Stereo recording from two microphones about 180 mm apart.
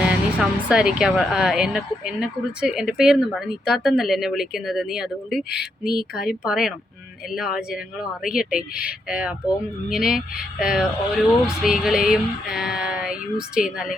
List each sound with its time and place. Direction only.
0.0 s speech: 5° right (ahead or behind)